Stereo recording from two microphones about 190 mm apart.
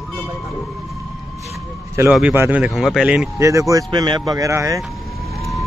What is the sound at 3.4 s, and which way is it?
A man's voice, 15° right (ahead or behind).